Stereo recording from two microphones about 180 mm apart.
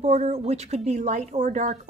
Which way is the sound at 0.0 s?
40° right (ahead or behind).